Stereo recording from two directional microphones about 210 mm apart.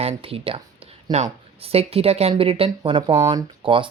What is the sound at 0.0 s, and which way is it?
Speech, 30° right (ahead or behind).